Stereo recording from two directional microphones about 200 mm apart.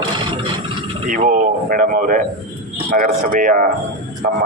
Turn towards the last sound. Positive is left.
turn(degrees=-40)  # may be behind; listen again after turning